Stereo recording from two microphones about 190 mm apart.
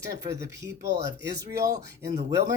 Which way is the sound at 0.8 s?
40° right (ahead or behind).